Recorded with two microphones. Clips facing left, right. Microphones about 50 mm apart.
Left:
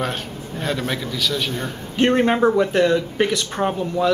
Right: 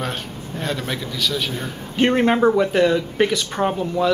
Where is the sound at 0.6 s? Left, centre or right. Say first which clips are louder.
Left 1 dB; centre.